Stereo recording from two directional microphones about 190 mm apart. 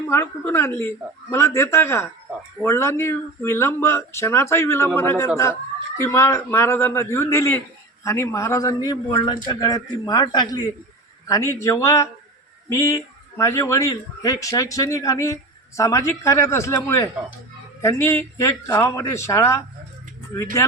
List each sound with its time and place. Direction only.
0.1 s a man's voice: 15° left (ahead or behind)